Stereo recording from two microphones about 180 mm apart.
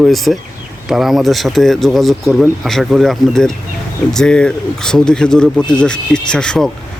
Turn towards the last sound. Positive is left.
turn(degrees=5)  # may be behind; listen again after turning